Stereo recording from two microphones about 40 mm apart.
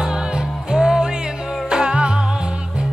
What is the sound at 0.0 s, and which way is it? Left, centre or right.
Music, centre.